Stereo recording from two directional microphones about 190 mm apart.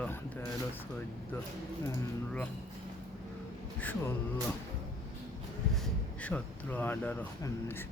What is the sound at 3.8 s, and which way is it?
Speech, 10° left (ahead or behind).